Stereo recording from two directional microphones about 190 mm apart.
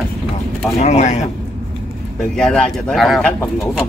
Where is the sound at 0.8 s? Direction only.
35° left (ahead or behind).